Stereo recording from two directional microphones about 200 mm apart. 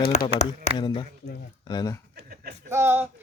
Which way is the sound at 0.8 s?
20° left (ahead or behind).